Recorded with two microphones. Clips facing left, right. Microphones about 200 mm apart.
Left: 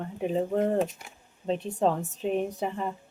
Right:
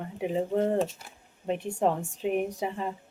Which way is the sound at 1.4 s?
15° right (ahead or behind).